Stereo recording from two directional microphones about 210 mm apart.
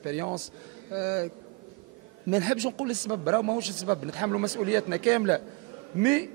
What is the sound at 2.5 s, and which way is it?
A man's voice, 20° right (ahead or behind).